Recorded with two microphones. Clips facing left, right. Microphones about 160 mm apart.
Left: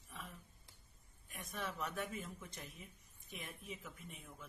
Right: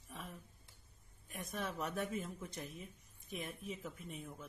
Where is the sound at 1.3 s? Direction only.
40° right (ahead or behind).